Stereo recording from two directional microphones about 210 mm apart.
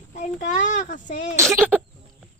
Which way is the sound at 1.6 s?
5° right (ahead or behind).